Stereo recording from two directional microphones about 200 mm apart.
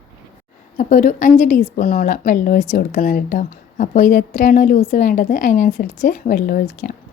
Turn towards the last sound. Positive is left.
turn(degrees=45)  # may be behind; listen again after turning